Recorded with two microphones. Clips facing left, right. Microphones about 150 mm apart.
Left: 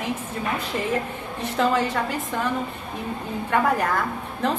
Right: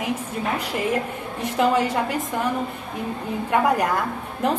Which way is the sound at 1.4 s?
15° right (ahead or behind).